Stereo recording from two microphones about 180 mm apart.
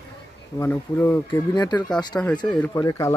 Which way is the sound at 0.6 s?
15° left (ahead or behind).